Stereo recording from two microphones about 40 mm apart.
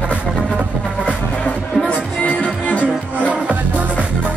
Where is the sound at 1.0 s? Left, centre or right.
Left.